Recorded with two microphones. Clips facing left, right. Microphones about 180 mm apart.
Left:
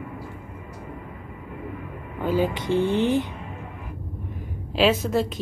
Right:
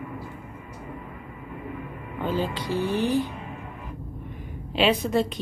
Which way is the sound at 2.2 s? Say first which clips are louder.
Left 4 dB; 10° left (ahead or behind).